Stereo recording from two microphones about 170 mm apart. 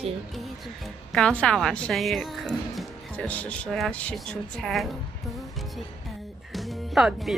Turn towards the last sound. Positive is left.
turn(degrees=0)  # may be behind; listen again after turning